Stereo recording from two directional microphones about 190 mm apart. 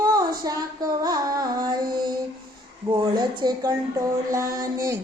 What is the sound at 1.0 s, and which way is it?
Carnatic music, 20° right (ahead or behind).